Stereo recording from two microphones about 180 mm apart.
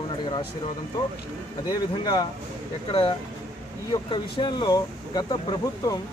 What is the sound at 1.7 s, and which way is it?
Speech, 25° left (ahead or behind).